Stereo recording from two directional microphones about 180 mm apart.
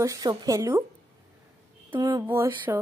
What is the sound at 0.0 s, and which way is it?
Speech, 20° right (ahead or behind).